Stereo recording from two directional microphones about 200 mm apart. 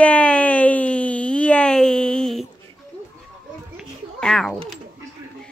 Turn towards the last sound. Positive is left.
turn(degrees=0)  # may be behind; listen again after turning